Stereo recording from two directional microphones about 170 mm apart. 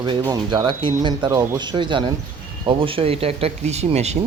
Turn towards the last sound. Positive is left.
turn(degrees=-40)  # may be behind; listen again after turning